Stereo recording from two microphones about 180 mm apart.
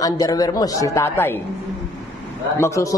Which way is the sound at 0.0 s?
20° left (ahead or behind).